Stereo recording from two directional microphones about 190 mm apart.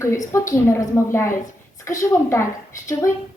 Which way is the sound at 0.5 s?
15° left (ahead or behind).